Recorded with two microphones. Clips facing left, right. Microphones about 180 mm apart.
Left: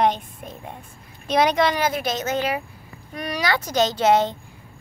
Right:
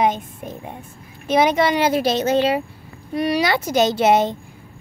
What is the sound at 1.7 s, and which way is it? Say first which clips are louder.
A woman's voice: right 6 dB; 30° right (ahead or behind).